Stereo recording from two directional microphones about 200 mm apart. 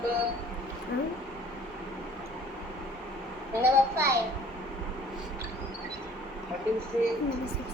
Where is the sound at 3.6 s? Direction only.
15° right (ahead or behind).